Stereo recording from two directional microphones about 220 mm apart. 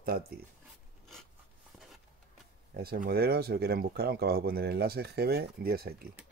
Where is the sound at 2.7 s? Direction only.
45° right (ahead or behind).